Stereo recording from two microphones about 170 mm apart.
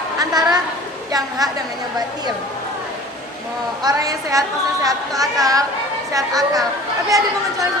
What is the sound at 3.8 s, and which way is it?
A woman's voice, 20° right (ahead or behind).